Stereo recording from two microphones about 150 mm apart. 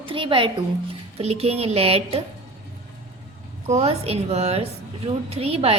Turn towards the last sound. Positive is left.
turn(degrees=-40)  # may be behind; listen again after turning